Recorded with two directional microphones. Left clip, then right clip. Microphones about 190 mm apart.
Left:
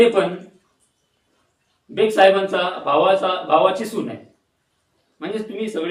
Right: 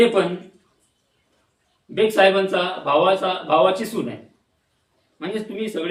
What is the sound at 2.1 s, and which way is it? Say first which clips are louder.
Speech: left 2 dB; 10° right (ahead or behind).